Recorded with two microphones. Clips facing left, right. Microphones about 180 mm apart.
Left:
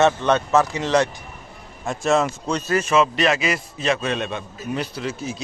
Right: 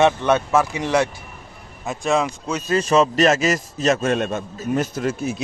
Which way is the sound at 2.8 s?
40° right (ahead or behind).